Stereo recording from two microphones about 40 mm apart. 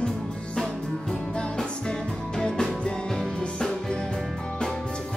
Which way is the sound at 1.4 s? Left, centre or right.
Centre.